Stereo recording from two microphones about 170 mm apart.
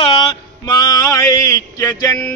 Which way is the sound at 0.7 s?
20° left (ahead or behind).